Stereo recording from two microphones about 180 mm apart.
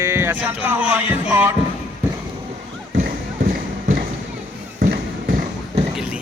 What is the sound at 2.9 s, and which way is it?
Clip-clop, 55° right (ahead or behind).